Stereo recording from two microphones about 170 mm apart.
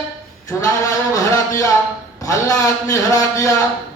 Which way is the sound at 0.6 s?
20° left (ahead or behind).